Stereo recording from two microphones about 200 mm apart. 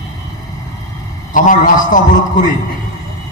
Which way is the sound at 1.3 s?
40° left (ahead or behind).